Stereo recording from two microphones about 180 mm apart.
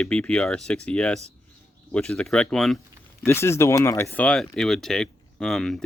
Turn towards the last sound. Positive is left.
turn(degrees=0)  # may be behind; listen again after turning